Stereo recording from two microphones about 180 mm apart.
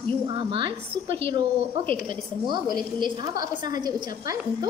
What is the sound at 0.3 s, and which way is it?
Speech, 25° right (ahead or behind).